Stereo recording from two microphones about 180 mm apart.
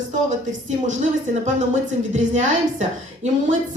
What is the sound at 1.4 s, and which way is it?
A woman's voice, 40° right (ahead or behind).